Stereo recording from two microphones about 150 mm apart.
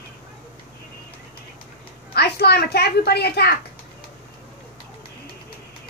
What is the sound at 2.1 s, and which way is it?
A woman's voice, 90° left.